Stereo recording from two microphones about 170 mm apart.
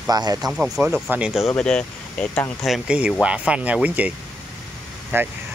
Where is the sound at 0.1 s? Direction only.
20° right (ahead or behind).